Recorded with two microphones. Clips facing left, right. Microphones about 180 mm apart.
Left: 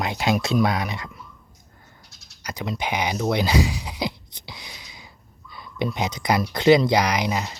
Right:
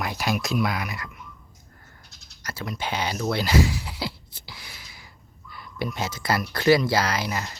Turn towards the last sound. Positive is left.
turn(degrees=20)  # may be behind; listen again after turning